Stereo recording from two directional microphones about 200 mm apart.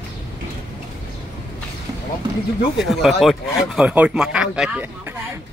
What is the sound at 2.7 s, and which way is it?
Speech, centre (ahead or behind).